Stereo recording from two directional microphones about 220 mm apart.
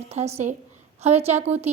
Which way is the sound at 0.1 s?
30° right (ahead or behind).